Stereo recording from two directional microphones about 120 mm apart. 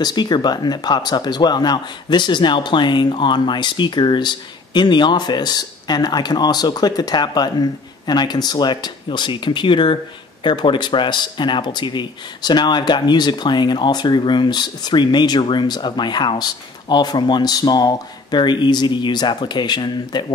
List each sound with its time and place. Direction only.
0.0 s speech: 35° left (ahead or behind)